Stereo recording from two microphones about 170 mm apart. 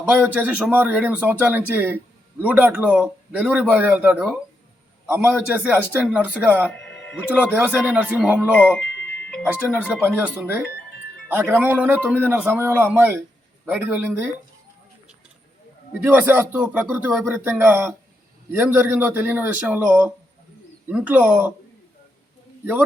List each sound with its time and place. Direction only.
0.1 s a man's voice: 10° right (ahead or behind)
6.7 s music: 5° left (ahead or behind)
7.2 s a man's voice: 10° right (ahead or behind)
8.5 s speech: 10° left (ahead or behind)
9.3 s music: 5° right (ahead or behind)
9.9 s a man's voice: 10° right (ahead or behind)
12.0 s speech: 10° left (ahead or behind)
12.3 s a man's voice: 10° right (ahead or behind)
16.0 s a man's voice: 10° right (ahead or behind)